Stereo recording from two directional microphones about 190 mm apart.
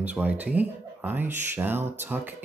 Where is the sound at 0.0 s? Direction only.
10° right (ahead or behind).